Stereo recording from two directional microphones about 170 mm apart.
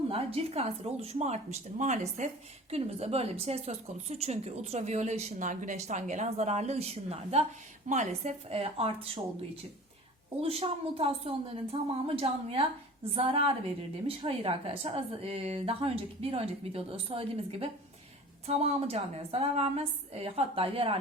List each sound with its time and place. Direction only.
0.1 s speech: 35° right (ahead or behind)
10.4 s speech: 35° right (ahead or behind)